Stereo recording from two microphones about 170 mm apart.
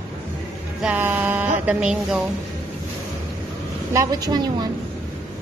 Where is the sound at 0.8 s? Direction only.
5° right (ahead or behind).